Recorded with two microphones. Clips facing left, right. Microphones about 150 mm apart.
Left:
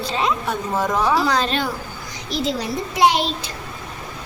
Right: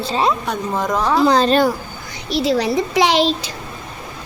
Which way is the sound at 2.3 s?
70° right (ahead or behind).